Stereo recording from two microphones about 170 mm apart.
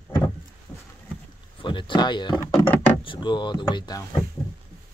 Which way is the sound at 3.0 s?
30° left (ahead or behind).